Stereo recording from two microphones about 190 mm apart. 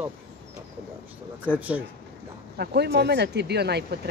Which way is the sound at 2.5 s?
55° right (ahead or behind).